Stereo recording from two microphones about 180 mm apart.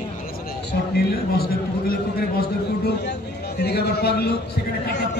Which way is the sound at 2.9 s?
65° left (ahead or behind).